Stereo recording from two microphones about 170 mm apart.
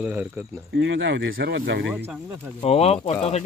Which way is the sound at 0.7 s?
90° right.